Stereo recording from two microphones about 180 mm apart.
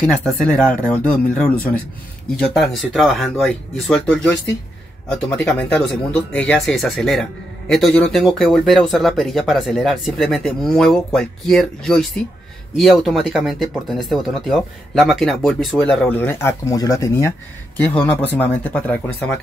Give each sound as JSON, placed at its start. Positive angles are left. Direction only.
{"t": 0.0, "sound": "speech", "side_deg": 5}